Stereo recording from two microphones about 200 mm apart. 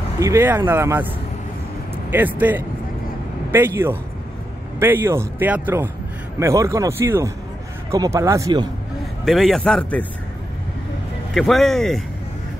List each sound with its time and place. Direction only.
0.2 s speech: 10° right (ahead or behind)
9.2 s speech: centre (ahead or behind)
11.3 s speech: centre (ahead or behind)